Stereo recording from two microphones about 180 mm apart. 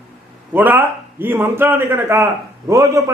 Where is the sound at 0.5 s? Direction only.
10° right (ahead or behind).